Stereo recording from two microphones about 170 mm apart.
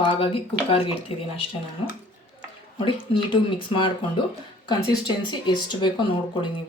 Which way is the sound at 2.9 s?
30° left (ahead or behind).